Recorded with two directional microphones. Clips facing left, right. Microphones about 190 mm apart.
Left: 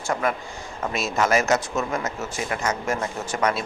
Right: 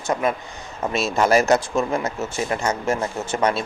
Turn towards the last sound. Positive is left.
turn(degrees=-30)  # may be behind; listen again after turning